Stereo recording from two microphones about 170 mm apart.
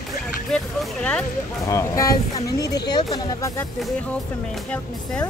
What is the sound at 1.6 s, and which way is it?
Speech, 15° left (ahead or behind).